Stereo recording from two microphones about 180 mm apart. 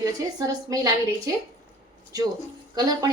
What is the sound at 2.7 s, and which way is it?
Speech, 20° right (ahead or behind).